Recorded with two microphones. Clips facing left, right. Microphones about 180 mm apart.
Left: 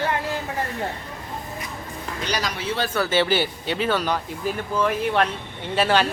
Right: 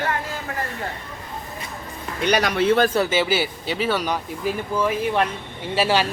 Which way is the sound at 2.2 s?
60° right (ahead or behind).